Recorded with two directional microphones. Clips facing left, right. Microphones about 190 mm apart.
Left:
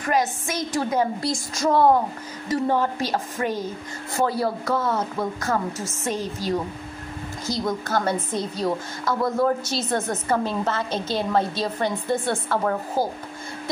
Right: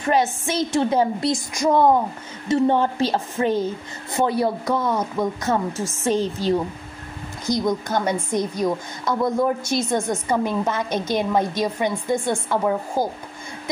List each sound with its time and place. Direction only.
0.0 s a woman's voice: 25° right (ahead or behind)
2.4 s a woman's voice: 25° right (ahead or behind)
6.0 s a woman's voice: 30° right (ahead or behind)
7.4 s a woman's voice: 15° right (ahead or behind)